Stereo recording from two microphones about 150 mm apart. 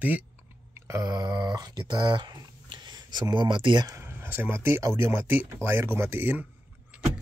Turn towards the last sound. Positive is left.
turn(degrees=-5)  # may be behind; listen again after turning